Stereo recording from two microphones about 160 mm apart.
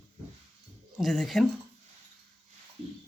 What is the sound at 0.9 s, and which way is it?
Speech, centre (ahead or behind).